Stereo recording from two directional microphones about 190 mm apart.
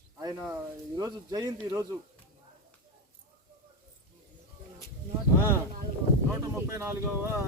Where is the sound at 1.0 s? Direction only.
20° right (ahead or behind).